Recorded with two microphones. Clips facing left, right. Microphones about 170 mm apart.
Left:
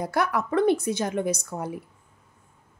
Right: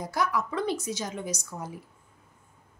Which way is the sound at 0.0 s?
60° left (ahead or behind).